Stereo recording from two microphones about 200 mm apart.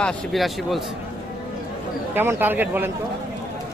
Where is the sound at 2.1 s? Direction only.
10° right (ahead or behind).